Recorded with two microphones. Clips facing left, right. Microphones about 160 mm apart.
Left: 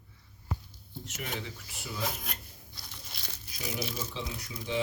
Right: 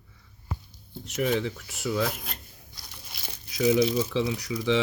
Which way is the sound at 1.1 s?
90° right.